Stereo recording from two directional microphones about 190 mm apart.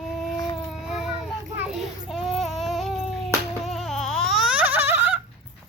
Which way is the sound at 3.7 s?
Centre (ahead or behind).